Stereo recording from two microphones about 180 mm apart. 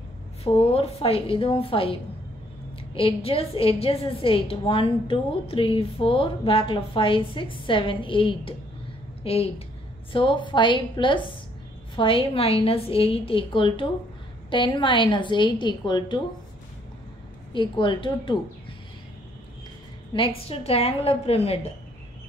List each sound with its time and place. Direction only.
0.4 s a woman's voice: 35° left (ahead or behind)
17.5 s a woman's voice: 25° left (ahead or behind)
20.2 s a woman's voice: 30° left (ahead or behind)